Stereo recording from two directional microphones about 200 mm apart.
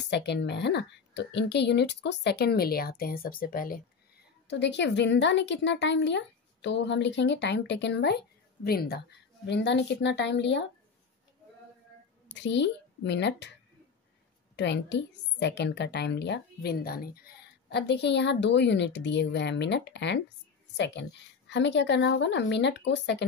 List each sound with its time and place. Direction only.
0.0 s a woman's voice: 55° left (ahead or behind)
4.5 s a woman's voice: 60° left (ahead or behind)
12.4 s a woman's voice: 60° left (ahead or behind)
14.5 s a woman's voice: 60° left (ahead or behind)